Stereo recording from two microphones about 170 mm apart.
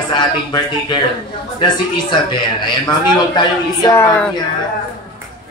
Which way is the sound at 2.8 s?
25° left (ahead or behind).